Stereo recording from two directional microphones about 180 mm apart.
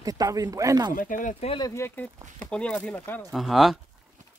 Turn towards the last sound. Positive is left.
turn(degrees=0)  # may be behind; listen again after turning